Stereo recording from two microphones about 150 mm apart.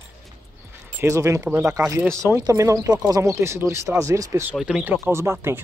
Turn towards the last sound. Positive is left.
turn(degrees=-15)  # may be behind; listen again after turning